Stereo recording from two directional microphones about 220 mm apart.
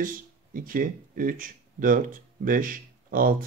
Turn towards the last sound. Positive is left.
turn(degrees=-40)  # may be behind; listen again after turning